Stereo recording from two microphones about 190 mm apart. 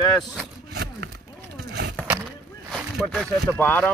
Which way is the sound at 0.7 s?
55° right (ahead or behind).